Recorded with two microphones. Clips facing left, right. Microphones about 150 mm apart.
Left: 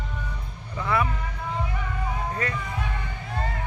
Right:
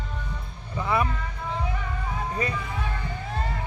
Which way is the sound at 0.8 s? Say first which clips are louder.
Even; 20° right (ahead or behind).